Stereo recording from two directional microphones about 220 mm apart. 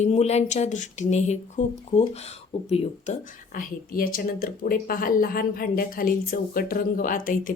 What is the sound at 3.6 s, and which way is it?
Speech, 40° left (ahead or behind).